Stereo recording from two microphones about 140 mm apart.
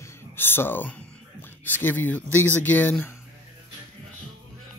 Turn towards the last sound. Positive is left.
turn(degrees=15)  # may be behind; listen again after turning